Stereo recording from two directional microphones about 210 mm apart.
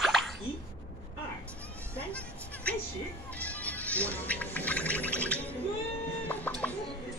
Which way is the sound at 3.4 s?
5° left (ahead or behind).